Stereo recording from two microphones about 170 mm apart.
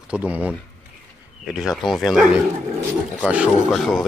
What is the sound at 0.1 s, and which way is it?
Speech, 10° right (ahead or behind).